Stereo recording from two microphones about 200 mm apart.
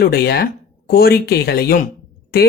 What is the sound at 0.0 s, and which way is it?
A man's voice, 50° left (ahead or behind).